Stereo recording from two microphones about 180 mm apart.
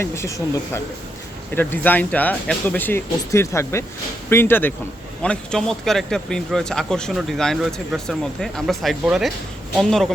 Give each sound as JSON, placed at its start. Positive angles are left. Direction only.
{"t": 0.0, "sound": "speech", "side_deg": 15}
{"t": 1.5, "sound": "speech", "side_deg": 10}